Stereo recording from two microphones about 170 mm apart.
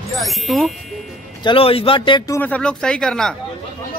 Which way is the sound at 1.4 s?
35° left (ahead or behind).